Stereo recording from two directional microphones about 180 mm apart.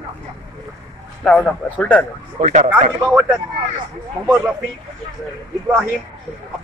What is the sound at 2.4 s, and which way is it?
Speech, 40° right (ahead or behind).